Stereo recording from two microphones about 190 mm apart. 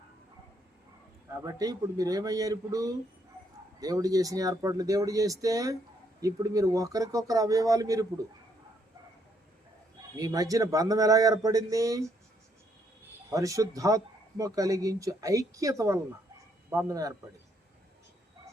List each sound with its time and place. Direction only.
1.3 s speech: 20° right (ahead or behind)
10.2 s speech: 20° right (ahead or behind)
13.3 s speech: 15° right (ahead or behind)